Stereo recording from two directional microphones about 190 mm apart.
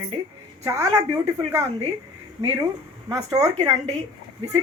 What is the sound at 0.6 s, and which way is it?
Speech, 15° right (ahead or behind).